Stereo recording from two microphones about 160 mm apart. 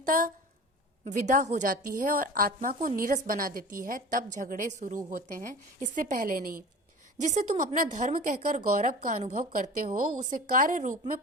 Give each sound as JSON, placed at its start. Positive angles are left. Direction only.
{"t": 0.0, "sound": "speech", "side_deg": -60}
{"t": 1.0, "sound": "a woman's voice", "side_deg": -45}
{"t": 7.2, "sound": "a woman's voice", "side_deg": -50}
{"t": 9.1, "sound": "a woman's voice", "side_deg": -40}
{"t": 9.4, "sound": "a woman's voice", "side_deg": -60}